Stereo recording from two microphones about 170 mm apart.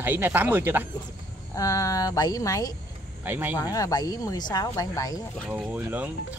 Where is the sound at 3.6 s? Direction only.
20° left (ahead or behind).